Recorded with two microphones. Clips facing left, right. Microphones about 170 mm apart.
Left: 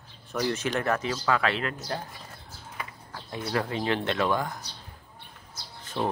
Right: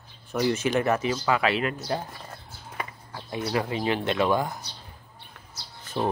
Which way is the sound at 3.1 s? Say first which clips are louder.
Right 2 dB; 10° right (ahead or behind).